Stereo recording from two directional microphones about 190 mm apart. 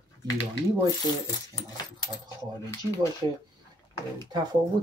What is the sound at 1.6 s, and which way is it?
Speech, 20° left (ahead or behind).